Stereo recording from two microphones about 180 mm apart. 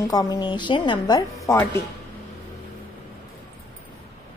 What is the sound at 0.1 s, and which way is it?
Speech, 20° left (ahead or behind).